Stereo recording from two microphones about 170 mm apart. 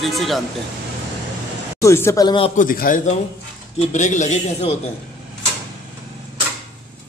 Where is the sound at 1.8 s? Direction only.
15° left (ahead or behind).